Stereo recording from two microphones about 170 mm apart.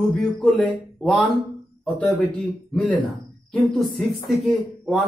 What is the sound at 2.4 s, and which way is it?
Speech, centre (ahead or behind).